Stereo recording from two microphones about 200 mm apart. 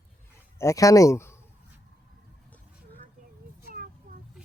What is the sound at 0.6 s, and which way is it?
Speech, 15° left (ahead or behind).